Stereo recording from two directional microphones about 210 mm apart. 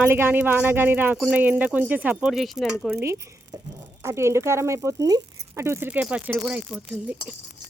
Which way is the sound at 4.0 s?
10° right (ahead or behind).